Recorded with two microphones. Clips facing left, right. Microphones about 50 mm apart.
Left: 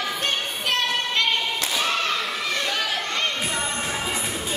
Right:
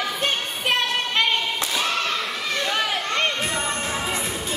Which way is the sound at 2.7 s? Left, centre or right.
Centre.